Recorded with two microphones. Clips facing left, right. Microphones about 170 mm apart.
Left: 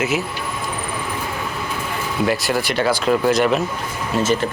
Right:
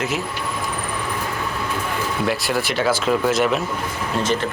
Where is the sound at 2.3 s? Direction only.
Centre (ahead or behind).